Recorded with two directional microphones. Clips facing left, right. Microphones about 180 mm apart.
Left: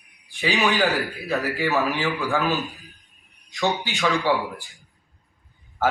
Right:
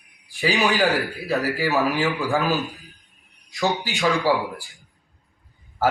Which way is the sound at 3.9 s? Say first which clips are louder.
Right 1 dB; centre (ahead or behind).